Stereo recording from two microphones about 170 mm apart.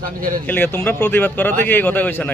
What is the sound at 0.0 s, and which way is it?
Speech, 55° right (ahead or behind).